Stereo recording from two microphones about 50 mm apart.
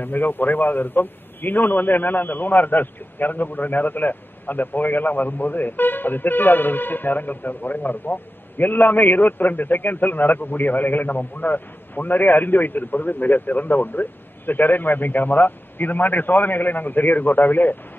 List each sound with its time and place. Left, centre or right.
0.0 s a man's voice: left